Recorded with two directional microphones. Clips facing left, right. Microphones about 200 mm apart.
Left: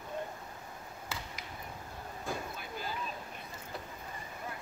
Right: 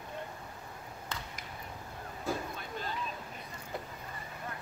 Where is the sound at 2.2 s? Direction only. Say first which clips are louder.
Right 4 dB; 5° left (ahead or behind).